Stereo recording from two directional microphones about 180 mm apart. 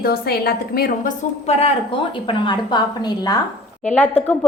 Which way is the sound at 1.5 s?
35° left (ahead or behind).